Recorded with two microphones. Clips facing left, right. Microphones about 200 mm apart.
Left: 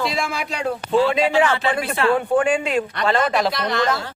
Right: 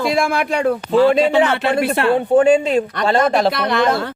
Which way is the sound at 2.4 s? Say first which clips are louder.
Right 6 dB; 40° right (ahead or behind).